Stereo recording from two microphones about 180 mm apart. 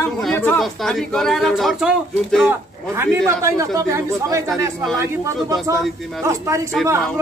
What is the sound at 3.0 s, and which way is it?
Speech, 15° right (ahead or behind).